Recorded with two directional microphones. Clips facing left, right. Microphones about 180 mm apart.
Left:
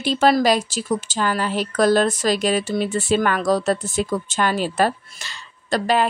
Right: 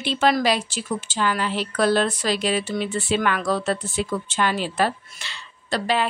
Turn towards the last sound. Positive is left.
turn(degrees=45)  # may be behind; listen again after turning